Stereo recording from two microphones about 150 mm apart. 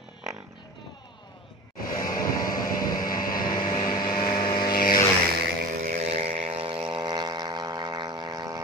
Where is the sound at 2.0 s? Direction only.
25° left (ahead or behind).